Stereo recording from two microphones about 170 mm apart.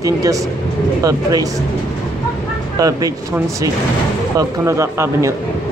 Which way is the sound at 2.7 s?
20° right (ahead or behind).